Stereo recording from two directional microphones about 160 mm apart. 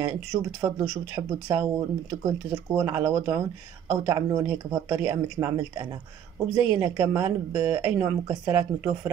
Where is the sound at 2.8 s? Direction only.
20° right (ahead or behind).